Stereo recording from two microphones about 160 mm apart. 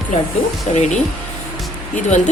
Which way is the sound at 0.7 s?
45° left (ahead or behind).